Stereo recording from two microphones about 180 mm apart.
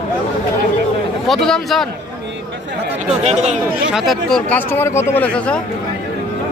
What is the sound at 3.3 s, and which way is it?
Speech, 40° right (ahead or behind).